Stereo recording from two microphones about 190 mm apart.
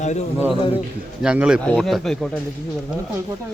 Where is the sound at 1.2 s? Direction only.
5° right (ahead or behind).